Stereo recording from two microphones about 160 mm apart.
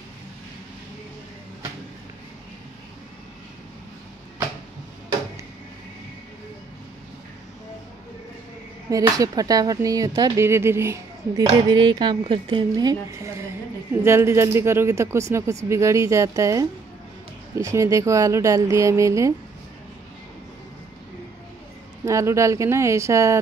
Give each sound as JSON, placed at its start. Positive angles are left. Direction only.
{"t": 8.9, "sound": "speech", "side_deg": -20}
{"t": 22.0, "sound": "speech", "side_deg": -20}